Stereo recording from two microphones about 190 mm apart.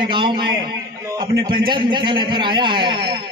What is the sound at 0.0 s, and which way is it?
A man's voice, 25° right (ahead or behind).